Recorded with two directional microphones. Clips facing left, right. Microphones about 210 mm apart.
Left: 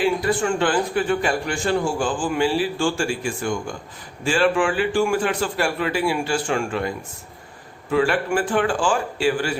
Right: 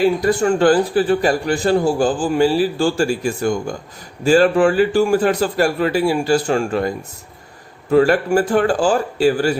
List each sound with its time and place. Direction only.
0.0 s a man's voice: 40° right (ahead or behind)